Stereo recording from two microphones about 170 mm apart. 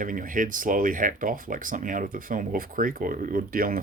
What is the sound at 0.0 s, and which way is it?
Speech, 50° right (ahead or behind).